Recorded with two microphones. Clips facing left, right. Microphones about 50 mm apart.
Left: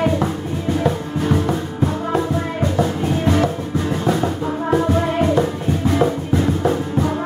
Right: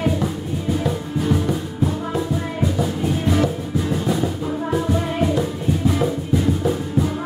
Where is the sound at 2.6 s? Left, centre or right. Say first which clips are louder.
Left 2 dB; centre.